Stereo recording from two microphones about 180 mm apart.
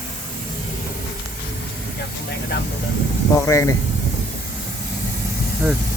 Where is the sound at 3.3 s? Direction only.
15° left (ahead or behind).